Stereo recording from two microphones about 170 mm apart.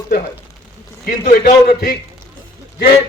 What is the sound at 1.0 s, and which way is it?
Speech, 60° left (ahead or behind).